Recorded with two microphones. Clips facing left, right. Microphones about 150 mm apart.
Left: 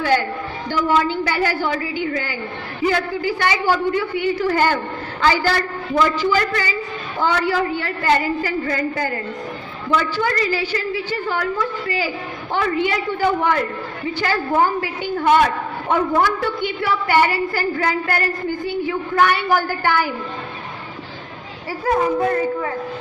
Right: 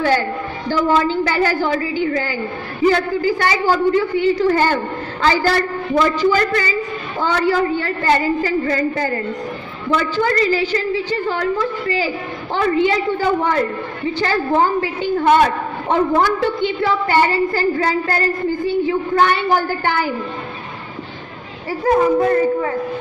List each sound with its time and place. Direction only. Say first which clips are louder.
0.7 s a woman's voice: right 2 dB; 40° right (ahead or behind)
21.8 s a woman's voice: right 4 dB; 35° right (ahead or behind)